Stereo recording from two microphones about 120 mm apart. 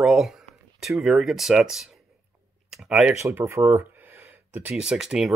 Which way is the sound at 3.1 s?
20° right (ahead or behind).